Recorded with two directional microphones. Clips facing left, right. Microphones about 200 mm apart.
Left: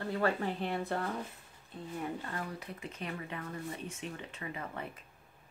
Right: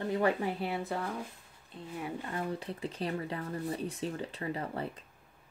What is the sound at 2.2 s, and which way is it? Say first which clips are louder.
Speech: right 5 dB; 25° right (ahead or behind).